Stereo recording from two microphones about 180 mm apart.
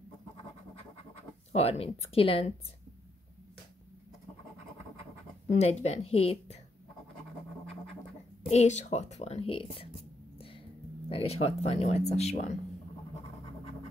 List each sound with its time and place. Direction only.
1.5 s speech: 35° left (ahead or behind)
5.5 s speech: 35° left (ahead or behind)
8.5 s speech: 40° left (ahead or behind)
11.1 s speech: 35° left (ahead or behind)